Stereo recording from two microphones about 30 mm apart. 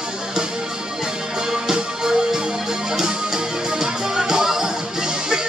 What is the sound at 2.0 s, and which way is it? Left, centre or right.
Music, right.